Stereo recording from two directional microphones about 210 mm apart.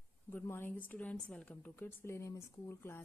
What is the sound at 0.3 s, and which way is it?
Speech, 10° left (ahead or behind).